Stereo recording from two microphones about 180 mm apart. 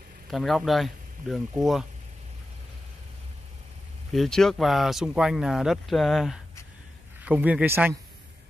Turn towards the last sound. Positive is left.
turn(degrees=-10)  # may be behind; listen again after turning